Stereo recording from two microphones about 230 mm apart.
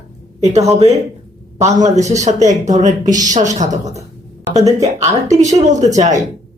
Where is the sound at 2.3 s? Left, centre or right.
Right.